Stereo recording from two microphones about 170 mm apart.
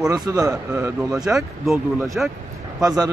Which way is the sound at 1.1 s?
Centre (ahead or behind).